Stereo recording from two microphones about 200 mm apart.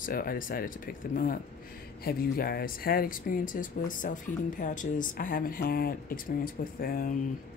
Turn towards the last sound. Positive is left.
turn(degrees=45)  # may be behind; listen again after turning